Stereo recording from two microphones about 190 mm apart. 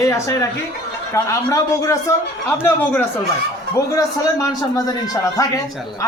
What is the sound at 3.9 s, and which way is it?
A man's voice, 15° left (ahead or behind).